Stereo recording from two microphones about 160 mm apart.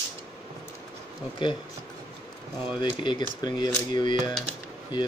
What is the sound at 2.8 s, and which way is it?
Speech, 30° left (ahead or behind).